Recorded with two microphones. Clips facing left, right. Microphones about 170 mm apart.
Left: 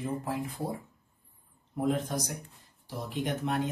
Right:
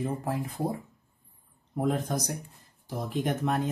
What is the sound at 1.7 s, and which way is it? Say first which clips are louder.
Speech: right 1 dB; 45° right (ahead or behind).